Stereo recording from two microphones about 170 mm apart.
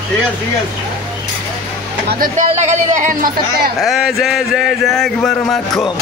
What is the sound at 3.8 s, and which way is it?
Speech, centre (ahead or behind).